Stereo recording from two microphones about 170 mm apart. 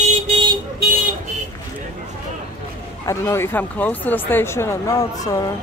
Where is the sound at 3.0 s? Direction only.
15° left (ahead or behind).